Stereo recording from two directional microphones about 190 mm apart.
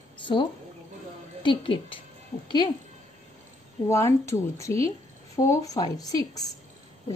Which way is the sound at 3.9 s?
15° left (ahead or behind).